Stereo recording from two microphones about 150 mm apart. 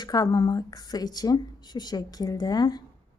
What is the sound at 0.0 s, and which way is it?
A woman's voice, 25° left (ahead or behind).